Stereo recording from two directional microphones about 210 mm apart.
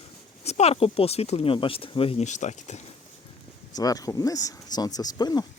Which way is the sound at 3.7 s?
15° left (ahead or behind).